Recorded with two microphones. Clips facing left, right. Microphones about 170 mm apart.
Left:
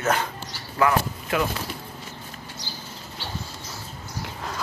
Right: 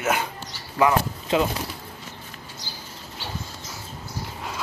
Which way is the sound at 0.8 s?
20° right (ahead or behind).